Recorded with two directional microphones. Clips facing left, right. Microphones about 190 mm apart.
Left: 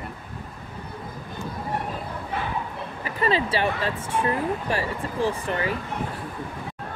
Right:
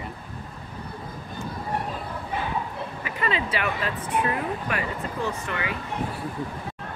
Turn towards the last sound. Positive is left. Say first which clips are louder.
# left 4 dB
turn(degrees=35)  # may be behind; listen again after turning